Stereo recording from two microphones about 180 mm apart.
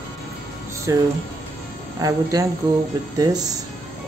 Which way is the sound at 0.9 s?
20° right (ahead or behind).